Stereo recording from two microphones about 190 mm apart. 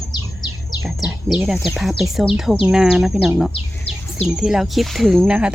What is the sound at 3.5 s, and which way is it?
Bird, 30° left (ahead or behind).